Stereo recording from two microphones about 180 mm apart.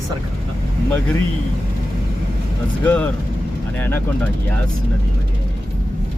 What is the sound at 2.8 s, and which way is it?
Speech, 10° left (ahead or behind).